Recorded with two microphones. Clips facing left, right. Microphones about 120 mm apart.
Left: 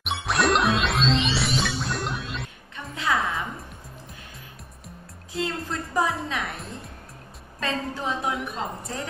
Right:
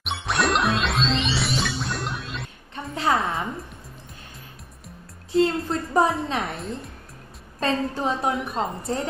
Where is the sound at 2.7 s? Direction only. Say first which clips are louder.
Right 3 dB; 35° right (ahead or behind).